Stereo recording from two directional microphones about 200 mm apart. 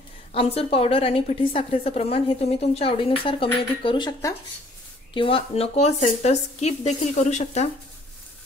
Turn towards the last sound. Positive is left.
turn(degrees=35)  # may be behind; listen again after turning